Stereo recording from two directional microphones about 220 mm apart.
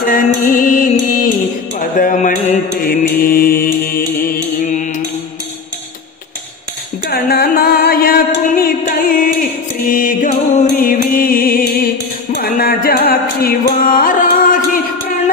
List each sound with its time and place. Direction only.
0.0 s music: 40° left (ahead or behind)
1.8 s mantra: 40° left (ahead or behind)
7.1 s music: 45° left (ahead or behind)